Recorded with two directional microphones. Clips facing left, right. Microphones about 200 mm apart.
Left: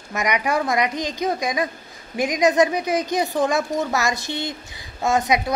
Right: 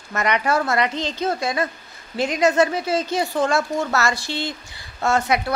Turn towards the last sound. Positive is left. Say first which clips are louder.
# even
turn(degrees=15)  # may be behind; listen again after turning